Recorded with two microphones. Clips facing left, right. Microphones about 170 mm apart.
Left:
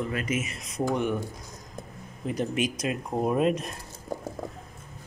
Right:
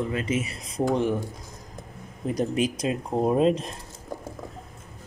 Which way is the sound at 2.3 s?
35° right (ahead or behind).